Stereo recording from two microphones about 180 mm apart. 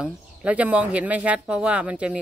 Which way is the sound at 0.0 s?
5° right (ahead or behind).